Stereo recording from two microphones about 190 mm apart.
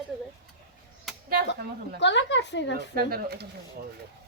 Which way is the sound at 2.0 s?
70° left (ahead or behind).